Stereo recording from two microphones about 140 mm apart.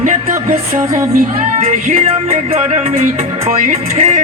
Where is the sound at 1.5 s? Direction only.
60° right (ahead or behind).